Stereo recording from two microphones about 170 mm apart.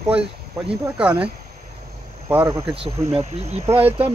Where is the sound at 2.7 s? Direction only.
35° right (ahead or behind).